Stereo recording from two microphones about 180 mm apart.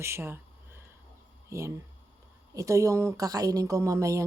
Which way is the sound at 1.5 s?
15° right (ahead or behind).